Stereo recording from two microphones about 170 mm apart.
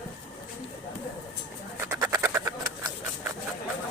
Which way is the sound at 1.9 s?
10° right (ahead or behind).